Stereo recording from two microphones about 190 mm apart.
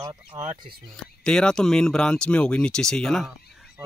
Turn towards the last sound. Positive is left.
turn(degrees=-15)  # may be behind; listen again after turning